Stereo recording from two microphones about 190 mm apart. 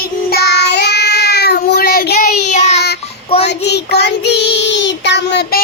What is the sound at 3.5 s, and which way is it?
Child singing, 60° left (ahead or behind).